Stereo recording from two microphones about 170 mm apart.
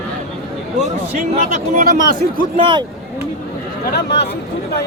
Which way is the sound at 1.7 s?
55° right (ahead or behind).